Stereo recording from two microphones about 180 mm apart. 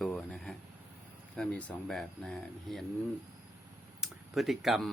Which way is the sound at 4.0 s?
Centre (ahead or behind).